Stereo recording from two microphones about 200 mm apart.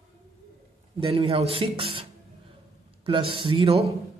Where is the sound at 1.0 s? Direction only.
25° right (ahead or behind).